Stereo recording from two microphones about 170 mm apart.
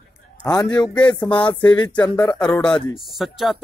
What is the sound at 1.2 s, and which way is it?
Speech, 25° left (ahead or behind).